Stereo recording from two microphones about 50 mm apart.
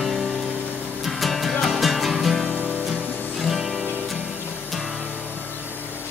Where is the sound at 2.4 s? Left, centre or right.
Right.